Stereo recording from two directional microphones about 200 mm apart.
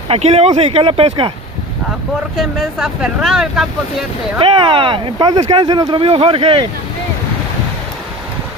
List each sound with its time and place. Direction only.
0.1 s speech: 30° right (ahead or behind)
2.3 s speech: centre (ahead or behind)
4.4 s speech: 25° right (ahead or behind)